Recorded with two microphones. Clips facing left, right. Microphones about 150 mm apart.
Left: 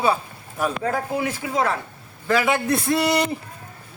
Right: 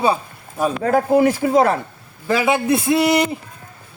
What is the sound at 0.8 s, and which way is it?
Speech, 45° right (ahead or behind).